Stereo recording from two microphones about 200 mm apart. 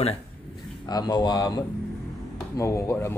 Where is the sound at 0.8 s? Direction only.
20° left (ahead or behind).